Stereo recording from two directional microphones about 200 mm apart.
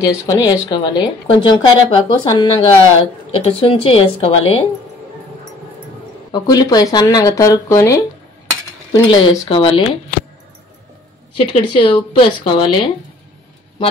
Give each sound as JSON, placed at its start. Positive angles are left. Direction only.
{"t": 0.3, "sound": "speech", "side_deg": 20}
{"t": 6.3, "sound": "speech", "side_deg": 20}
{"t": 11.3, "sound": "speech", "side_deg": 25}